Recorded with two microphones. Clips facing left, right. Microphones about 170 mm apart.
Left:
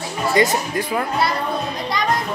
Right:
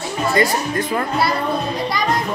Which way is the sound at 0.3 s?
20° left (ahead or behind).